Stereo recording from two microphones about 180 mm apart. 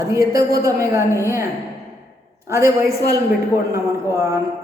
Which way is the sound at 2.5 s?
15° right (ahead or behind).